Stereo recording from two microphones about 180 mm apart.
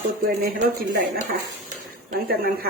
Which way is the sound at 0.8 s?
55° right (ahead or behind).